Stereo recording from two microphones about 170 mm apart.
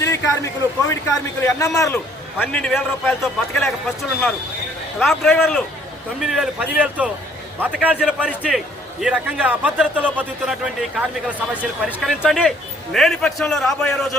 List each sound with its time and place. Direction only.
0.0 s a sound: 15° left (ahead or behind)
1.4 s a man's voice: 15° left (ahead or behind)
2.4 s a man's voice: 5° left (ahead or behind)
4.9 s a man's voice: centre (ahead or behind)